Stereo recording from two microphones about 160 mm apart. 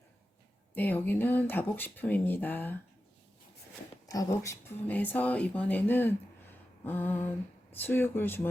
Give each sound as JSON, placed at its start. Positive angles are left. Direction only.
{"t": 0.8, "sound": "speech", "side_deg": 10}
{"t": 4.1, "sound": "speech", "side_deg": 25}
{"t": 4.9, "sound": "speech", "side_deg": 10}